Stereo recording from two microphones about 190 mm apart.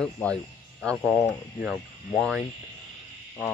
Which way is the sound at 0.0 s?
5° left (ahead or behind).